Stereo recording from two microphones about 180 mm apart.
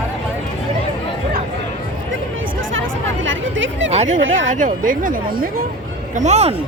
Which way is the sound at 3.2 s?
90° right.